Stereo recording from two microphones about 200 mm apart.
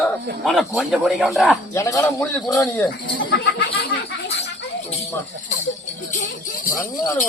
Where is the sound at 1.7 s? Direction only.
15° left (ahead or behind).